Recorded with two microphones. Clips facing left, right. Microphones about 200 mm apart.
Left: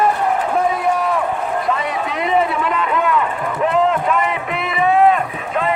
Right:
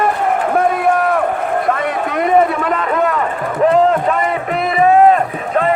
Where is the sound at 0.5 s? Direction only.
60° right (ahead or behind); by 5.7 s 40° right (ahead or behind).